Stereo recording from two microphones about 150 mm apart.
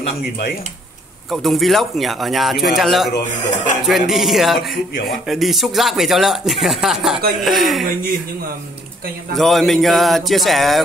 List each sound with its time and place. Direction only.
1.3 s speech: centre (ahead or behind)
3.3 s speech: 55° left (ahead or behind)
3.8 s speech: centre (ahead or behind)
9.4 s speech: centre (ahead or behind)